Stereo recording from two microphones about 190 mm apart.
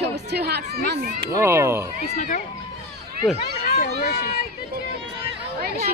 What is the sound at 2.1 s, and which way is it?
Speech, 45° left (ahead or behind).